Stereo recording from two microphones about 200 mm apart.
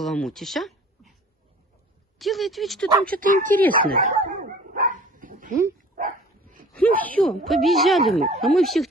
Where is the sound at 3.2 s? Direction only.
40° right (ahead or behind).